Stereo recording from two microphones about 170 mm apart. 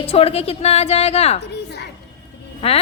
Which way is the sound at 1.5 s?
75° left (ahead or behind).